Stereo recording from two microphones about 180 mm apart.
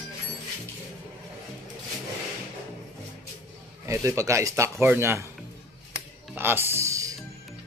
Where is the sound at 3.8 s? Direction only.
15° right (ahead or behind).